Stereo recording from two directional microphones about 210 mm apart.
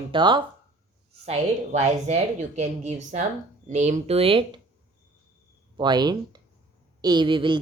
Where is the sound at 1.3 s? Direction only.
35° right (ahead or behind).